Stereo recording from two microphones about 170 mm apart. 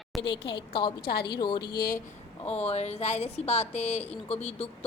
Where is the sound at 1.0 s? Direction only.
75° left (ahead or behind).